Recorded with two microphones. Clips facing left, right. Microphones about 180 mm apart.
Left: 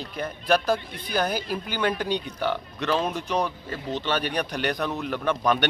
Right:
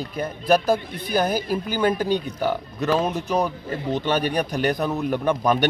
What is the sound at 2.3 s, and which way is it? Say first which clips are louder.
A man's voice: right 3 dB; 10° right (ahead or behind).